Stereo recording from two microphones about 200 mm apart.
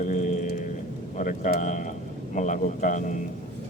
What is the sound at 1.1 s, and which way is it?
A man's voice, 40° left (ahead or behind).